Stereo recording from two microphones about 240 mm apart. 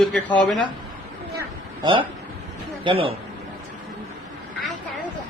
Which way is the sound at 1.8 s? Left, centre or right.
Centre.